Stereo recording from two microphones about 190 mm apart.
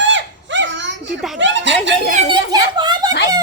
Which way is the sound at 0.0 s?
75° right (ahead or behind).